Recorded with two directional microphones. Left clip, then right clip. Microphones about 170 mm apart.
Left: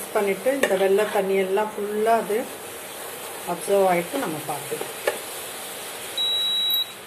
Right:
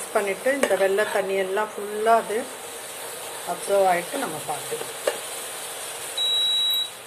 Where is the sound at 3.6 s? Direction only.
10° right (ahead or behind).